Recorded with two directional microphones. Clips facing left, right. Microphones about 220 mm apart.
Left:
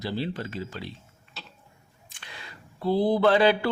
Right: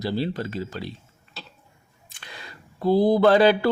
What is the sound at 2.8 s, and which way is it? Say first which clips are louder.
Speech: right 4 dB; 45° right (ahead or behind).